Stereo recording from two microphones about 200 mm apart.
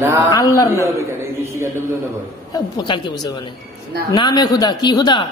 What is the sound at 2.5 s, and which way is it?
A man's voice, 20° left (ahead or behind).